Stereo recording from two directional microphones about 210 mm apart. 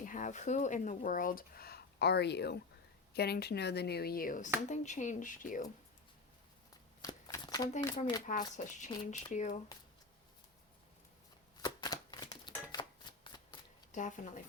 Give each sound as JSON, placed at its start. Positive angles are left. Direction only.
{"t": 0.0, "sound": "speech", "side_deg": 40}
{"t": 7.0, "sound": "a sound", "side_deg": 15}
{"t": 7.8, "sound": "speech", "side_deg": 20}
{"t": 8.3, "sound": "speech", "side_deg": 40}
{"t": 11.6, "sound": "shuffling cards", "side_deg": 20}
{"t": 13.9, "sound": "speech", "side_deg": 35}